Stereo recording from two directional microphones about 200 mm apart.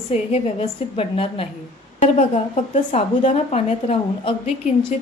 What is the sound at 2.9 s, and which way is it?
A woman's voice, 30° left (ahead or behind).